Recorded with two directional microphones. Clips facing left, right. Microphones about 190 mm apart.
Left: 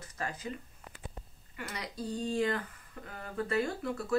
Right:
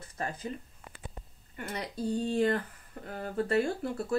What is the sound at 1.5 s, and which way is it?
Speech, 50° right (ahead or behind).